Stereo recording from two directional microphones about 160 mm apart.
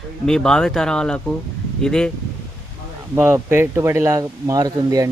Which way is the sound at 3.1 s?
15° right (ahead or behind).